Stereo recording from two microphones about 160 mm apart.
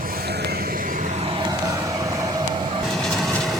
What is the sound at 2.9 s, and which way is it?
Vehicle, 5° left (ahead or behind).